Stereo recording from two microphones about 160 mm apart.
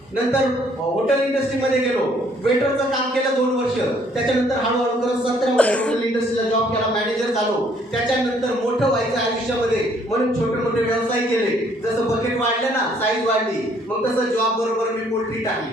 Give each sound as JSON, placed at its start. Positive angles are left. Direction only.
{"t": 5.5, "sound": "speech", "side_deg": 10}